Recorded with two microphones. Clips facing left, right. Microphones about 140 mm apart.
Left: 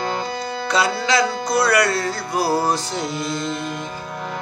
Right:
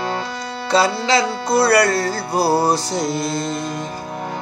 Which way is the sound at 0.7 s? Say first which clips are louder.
Right 4 dB; 30° right (ahead or behind).